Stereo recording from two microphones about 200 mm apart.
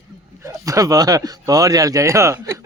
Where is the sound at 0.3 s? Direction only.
15° right (ahead or behind).